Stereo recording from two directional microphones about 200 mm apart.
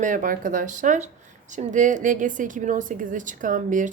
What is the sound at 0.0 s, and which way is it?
A woman's voice, 40° right (ahead or behind).